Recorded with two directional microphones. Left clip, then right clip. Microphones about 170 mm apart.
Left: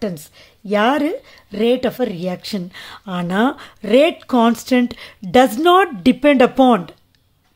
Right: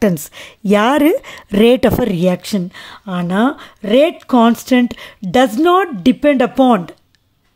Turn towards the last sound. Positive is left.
turn(degrees=-20)  # may be behind; listen again after turning